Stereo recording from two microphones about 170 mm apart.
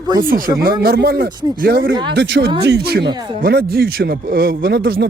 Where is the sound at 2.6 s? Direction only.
70° right (ahead or behind).